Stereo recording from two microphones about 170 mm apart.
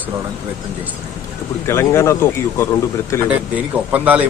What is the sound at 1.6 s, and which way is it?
Speech, 15° left (ahead or behind).